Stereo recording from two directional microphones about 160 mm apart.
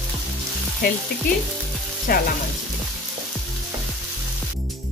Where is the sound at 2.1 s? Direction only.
70° left (ahead or behind).